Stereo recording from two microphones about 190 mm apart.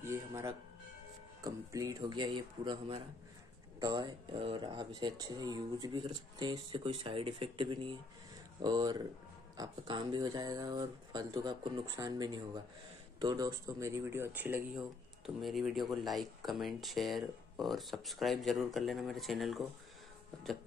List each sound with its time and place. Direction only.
0.0 s music: 15° right (ahead or behind)
1.4 s speech: 15° right (ahead or behind); by 19.6 s centre (ahead or behind)